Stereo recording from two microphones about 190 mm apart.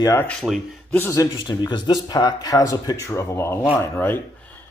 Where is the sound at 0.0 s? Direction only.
15° left (ahead or behind).